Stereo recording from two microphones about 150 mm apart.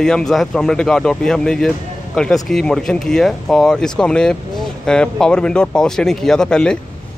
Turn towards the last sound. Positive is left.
turn(degrees=5)  # may be behind; listen again after turning